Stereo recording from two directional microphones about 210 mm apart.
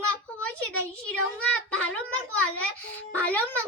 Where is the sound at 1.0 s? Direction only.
5° left (ahead or behind).